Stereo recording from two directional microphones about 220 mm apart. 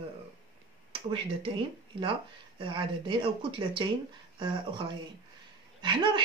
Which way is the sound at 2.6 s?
20° right (ahead or behind).